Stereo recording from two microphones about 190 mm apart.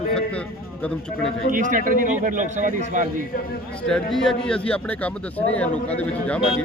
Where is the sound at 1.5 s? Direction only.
45° right (ahead or behind).